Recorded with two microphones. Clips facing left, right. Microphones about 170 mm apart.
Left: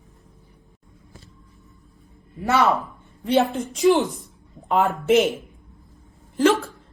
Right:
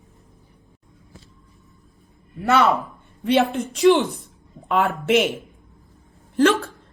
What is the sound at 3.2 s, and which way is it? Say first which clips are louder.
Speech: right 1 dB; 75° right (ahead or behind).